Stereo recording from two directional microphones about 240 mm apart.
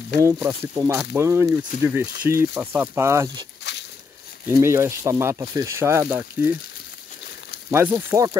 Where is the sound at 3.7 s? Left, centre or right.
Left.